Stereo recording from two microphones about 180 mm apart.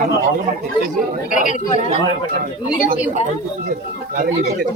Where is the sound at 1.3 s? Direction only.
45° left (ahead or behind).